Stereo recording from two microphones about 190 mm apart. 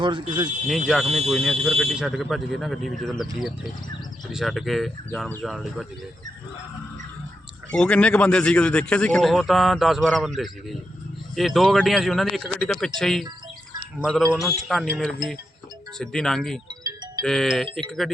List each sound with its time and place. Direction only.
0.0 s speech: 25° right (ahead or behind)
0.9 s a man's voice: centre (ahead or behind)
7.7 s a man's voice: 5° left (ahead or behind)
14.3 s a man's voice: centre (ahead or behind)
16.8 s music: 20° right (ahead or behind)
17.2 s a man's voice: centre (ahead or behind)